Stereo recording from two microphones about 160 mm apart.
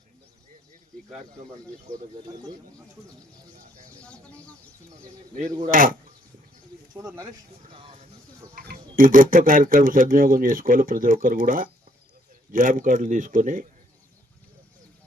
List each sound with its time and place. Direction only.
5.6 s speech: 60° right (ahead or behind)
7.0 s speech: 20° right (ahead or behind)
7.7 s a sound: 35° right (ahead or behind)
8.5 s speech: 60° right (ahead or behind)